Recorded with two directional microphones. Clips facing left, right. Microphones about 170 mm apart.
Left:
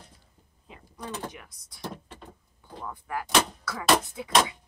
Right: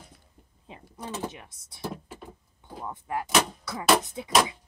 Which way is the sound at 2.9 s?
25° right (ahead or behind).